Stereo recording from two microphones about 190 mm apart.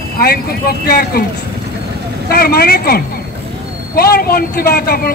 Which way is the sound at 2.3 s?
55° left (ahead or behind).